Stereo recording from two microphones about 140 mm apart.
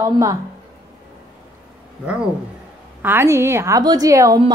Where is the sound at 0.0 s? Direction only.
25° right (ahead or behind).